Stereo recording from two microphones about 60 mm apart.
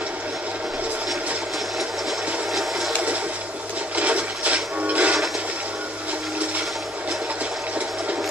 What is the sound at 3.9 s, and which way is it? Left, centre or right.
Music, right.